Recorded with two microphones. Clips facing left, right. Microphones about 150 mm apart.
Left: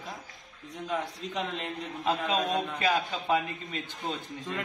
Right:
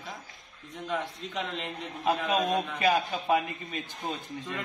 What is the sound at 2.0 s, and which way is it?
A man's voice, 15° right (ahead or behind).